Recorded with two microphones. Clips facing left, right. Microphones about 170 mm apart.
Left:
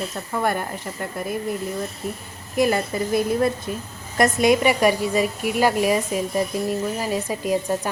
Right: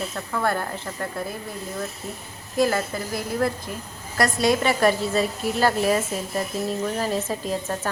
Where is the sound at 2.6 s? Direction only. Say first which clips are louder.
Left 2 dB; 20° left (ahead or behind).